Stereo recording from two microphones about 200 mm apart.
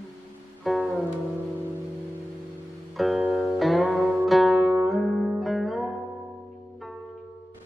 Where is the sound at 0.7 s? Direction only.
Centre (ahead or behind).